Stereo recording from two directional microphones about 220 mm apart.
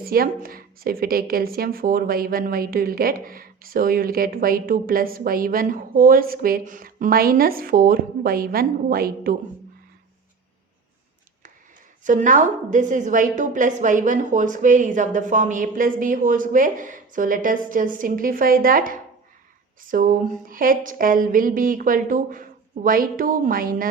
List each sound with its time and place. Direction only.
0.0 s a woman's voice: 40° right (ahead or behind)
12.0 s a woman's voice: 35° right (ahead or behind)